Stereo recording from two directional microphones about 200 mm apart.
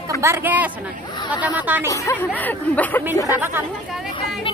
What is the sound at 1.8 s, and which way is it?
A woman's voice, 15° left (ahead or behind).